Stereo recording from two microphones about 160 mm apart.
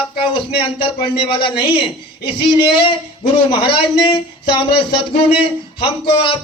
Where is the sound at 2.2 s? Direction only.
90° left.